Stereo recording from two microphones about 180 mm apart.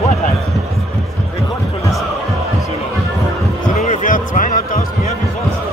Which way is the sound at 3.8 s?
45° left (ahead or behind).